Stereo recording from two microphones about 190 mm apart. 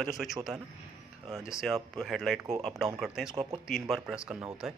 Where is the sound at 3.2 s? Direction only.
25° right (ahead or behind).